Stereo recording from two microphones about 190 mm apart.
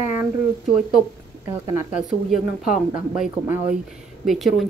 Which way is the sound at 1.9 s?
5° right (ahead or behind).